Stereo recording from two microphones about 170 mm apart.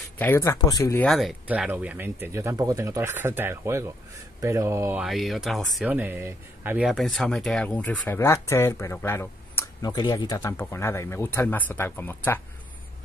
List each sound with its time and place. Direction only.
0.2 s speech: 15° left (ahead or behind)
1.0 s speech: centre (ahead or behind)
5.0 s speech: centre (ahead or behind)
5.9 s speech: 10° right (ahead or behind); by 12.2 s 10° left (ahead or behind)